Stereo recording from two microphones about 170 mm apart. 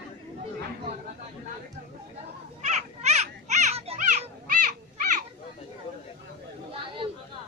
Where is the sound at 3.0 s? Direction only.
40° right (ahead or behind).